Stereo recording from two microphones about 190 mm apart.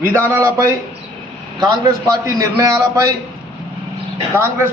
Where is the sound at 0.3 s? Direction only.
10° right (ahead or behind).